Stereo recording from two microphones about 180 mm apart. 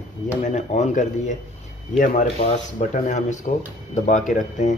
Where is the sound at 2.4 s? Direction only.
40° left (ahead or behind).